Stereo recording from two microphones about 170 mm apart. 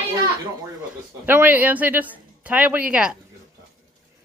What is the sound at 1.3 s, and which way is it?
Speech, 10° right (ahead or behind).